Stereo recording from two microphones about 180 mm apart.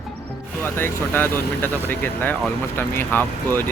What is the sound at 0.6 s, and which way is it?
Speech, 10° left (ahead or behind).